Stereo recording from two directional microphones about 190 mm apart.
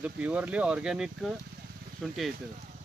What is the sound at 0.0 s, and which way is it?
Speech, 5° right (ahead or behind).